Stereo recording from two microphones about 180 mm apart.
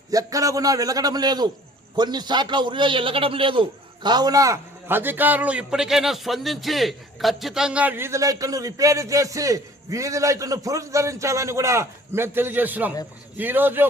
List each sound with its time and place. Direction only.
0.1 s a man's voice: 20° right (ahead or behind)